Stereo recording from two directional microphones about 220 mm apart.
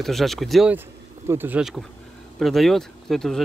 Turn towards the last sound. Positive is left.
turn(degrees=0)  # may be behind; listen again after turning